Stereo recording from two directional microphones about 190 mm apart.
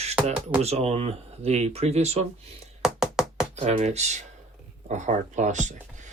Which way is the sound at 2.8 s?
Centre (ahead or behind).